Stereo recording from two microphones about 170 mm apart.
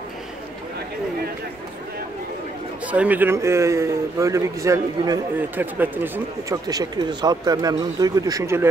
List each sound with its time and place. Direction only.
2.9 s a man's voice: 10° right (ahead or behind)